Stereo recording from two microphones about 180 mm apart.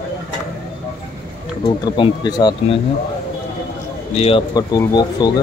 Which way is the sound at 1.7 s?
25° left (ahead or behind).